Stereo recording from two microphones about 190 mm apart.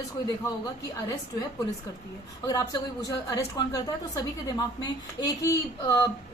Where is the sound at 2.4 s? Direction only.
20° left (ahead or behind).